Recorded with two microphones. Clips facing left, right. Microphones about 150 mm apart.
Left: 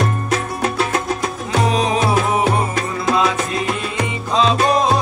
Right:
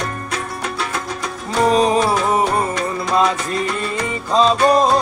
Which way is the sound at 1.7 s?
Centre (ahead or behind).